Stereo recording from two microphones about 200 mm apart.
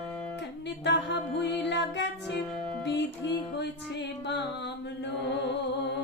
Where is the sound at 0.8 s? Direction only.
60° left (ahead or behind).